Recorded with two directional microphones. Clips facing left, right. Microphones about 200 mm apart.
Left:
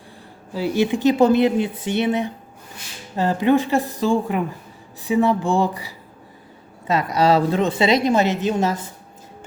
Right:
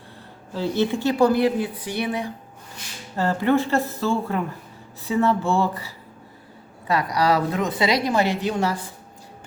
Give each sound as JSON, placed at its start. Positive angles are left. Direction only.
{"t": 0.5, "sound": "a woman's voice", "side_deg": 10}